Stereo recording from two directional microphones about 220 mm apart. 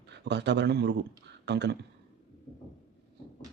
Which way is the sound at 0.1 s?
50° right (ahead or behind).